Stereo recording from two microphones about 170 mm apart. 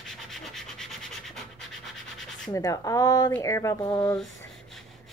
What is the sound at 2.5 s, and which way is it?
A woman's voice, 20° left (ahead or behind).